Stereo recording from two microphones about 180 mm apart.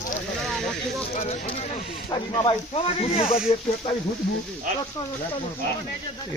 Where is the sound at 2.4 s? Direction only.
30° left (ahead or behind).